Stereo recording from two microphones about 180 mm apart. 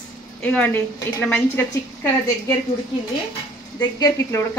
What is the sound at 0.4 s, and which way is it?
Speech, 10° left (ahead or behind).